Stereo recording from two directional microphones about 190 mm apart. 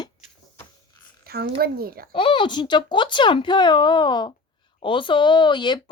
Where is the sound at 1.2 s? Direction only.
55° right (ahead or behind).